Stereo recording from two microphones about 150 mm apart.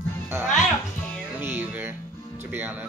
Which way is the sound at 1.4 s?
15° right (ahead or behind).